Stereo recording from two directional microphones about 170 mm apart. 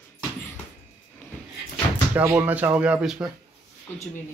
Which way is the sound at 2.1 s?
10° right (ahead or behind).